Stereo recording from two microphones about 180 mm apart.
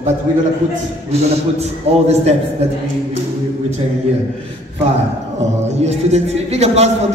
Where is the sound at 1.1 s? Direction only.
35° right (ahead or behind).